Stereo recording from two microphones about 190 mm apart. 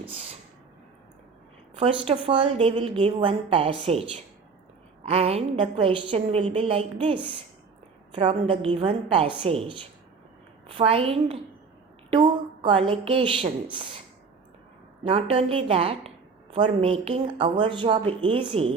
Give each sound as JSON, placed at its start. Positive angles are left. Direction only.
{"t": 0.1, "sound": "a sound", "side_deg": -30}
{"t": 1.8, "sound": "a woman's voice", "side_deg": -30}
{"t": 5.0, "sound": "a woman's voice", "side_deg": -30}
{"t": 10.7, "sound": "a woman's voice", "side_deg": -30}
{"t": 15.0, "sound": "a woman's voice", "side_deg": -30}